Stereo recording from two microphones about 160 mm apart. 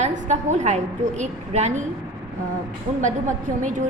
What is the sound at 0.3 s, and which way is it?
A woman's voice, 50° right (ahead or behind).